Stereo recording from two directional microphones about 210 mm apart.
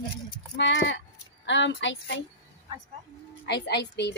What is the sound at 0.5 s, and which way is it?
Speech, 60° left (ahead or behind).